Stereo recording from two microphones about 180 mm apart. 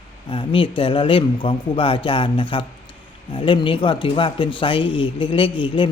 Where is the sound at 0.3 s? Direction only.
30° left (ahead or behind).